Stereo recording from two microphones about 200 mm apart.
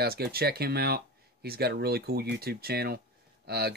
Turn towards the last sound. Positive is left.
turn(degrees=-55)  # may be behind; listen again after turning